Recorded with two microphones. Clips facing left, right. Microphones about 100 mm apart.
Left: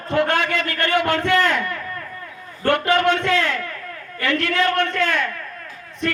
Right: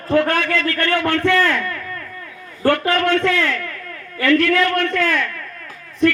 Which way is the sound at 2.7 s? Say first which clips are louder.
Even; 20° left (ahead or behind).